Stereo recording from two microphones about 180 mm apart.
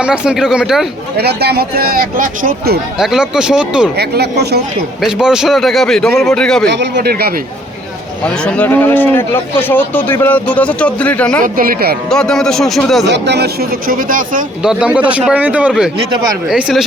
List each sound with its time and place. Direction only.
0.0 s a man's voice: 5° right (ahead or behind)
1.1 s speech: 60° right (ahead or behind)
3.0 s a man's voice: 5° right (ahead or behind)
3.9 s speech: 65° right (ahead or behind)
4.9 s a man's voice: 5° right (ahead or behind)
6.7 s speech: 75° right (ahead or behind); by 7.3 s 60° right (ahead or behind)
8.2 s speech: 5° left (ahead or behind)
11.4 s speech: 50° right (ahead or behind)
12.0 s a man's voice: 5° left (ahead or behind)
13.1 s speech: 75° right (ahead or behind); by 14.4 s 50° right (ahead or behind)
14.6 s a man's voice: 5° right (ahead or behind)